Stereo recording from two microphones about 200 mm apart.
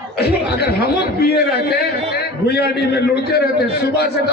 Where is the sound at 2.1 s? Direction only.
55° left (ahead or behind).